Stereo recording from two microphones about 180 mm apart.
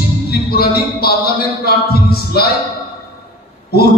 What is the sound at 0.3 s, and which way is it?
Music, 60° left (ahead or behind).